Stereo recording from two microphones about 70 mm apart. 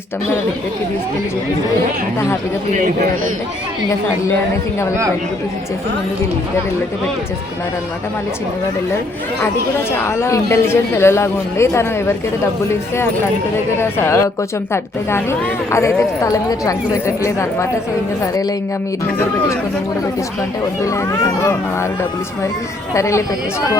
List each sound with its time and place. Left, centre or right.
10.0 s speech: left
13.7 s a woman's voice: left
20.8 s a woman's voice: left
23.0 s a woman's voice: left